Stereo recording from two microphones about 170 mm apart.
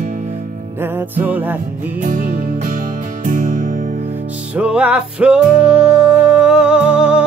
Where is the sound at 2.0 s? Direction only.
55° right (ahead or behind).